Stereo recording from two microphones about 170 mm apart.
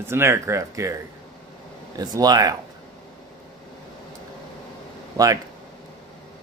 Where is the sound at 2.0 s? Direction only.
20° right (ahead or behind).